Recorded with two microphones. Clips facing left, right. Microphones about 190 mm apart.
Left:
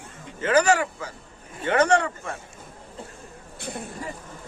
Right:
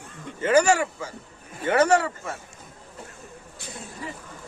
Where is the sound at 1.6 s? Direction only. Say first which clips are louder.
Right 1 dB; 5° right (ahead or behind).